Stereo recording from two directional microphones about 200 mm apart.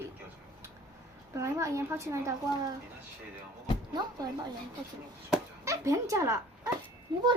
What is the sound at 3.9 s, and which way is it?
Speech, 20° right (ahead or behind).